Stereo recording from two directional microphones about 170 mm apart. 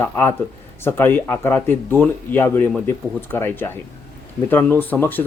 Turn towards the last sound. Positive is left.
turn(degrees=10)  # may be behind; listen again after turning